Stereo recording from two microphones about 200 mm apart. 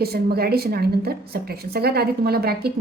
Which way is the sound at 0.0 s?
50° right (ahead or behind).